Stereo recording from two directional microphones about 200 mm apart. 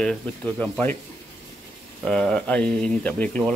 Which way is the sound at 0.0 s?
5° left (ahead or behind).